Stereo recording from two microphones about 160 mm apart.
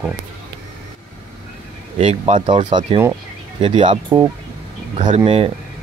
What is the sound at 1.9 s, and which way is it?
Speech, 40° right (ahead or behind).